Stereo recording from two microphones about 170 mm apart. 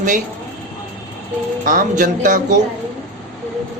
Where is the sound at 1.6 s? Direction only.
50° right (ahead or behind).